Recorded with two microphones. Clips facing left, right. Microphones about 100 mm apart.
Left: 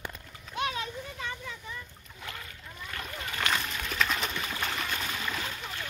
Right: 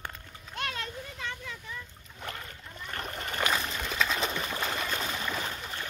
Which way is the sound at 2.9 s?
45° right (ahead or behind).